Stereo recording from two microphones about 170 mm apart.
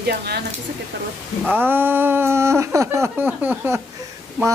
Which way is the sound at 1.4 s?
10° right (ahead or behind).